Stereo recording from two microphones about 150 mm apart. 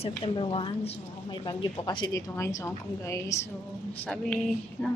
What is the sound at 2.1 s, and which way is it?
A woman's voice, 20° left (ahead or behind).